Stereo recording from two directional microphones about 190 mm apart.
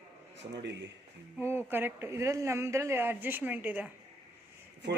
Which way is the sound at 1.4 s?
10° right (ahead or behind).